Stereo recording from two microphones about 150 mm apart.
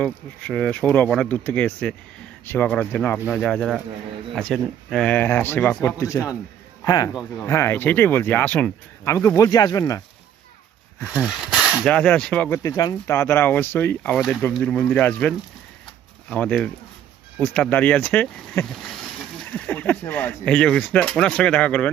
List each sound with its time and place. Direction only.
0.0 s speech: 5° left (ahead or behind); by 10.0 s 25° left (ahead or behind)
11.0 s speech: 10° right (ahead or behind)
11.9 s speech: 10° left (ahead or behind)
12.6 s speech: 25° left (ahead or behind); by 21.8 s 10° left (ahead or behind)